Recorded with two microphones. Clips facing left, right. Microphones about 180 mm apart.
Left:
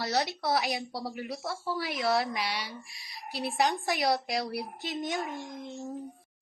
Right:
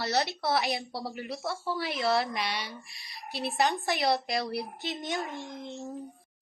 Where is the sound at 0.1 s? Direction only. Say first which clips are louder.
Right 1 dB; 5° right (ahead or behind).